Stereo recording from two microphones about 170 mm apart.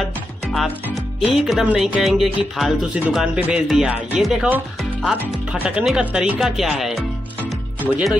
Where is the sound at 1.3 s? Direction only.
5° right (ahead or behind).